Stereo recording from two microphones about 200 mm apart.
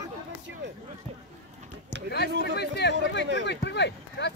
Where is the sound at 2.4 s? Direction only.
55° left (ahead or behind).